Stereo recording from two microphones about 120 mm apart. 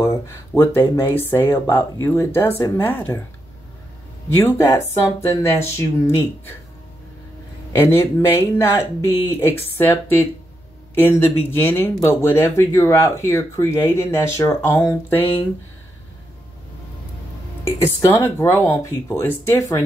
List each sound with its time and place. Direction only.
0.0 s speech: 20° left (ahead or behind)
4.3 s speech: 20° left (ahead or behind)
7.7 s speech: 20° left (ahead or behind)
17.7 s speech: 20° left (ahead or behind)